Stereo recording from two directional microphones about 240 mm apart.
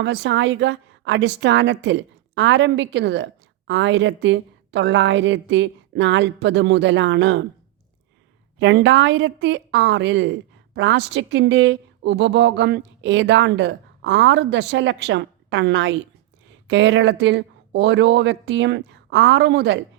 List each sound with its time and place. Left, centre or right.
0.0 s a woman's voice: right
8.5 s a woman's voice: right